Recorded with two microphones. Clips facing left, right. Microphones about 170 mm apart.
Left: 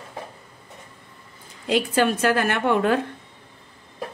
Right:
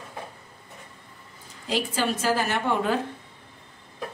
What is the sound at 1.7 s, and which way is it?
A woman's voice, 60° left (ahead or behind).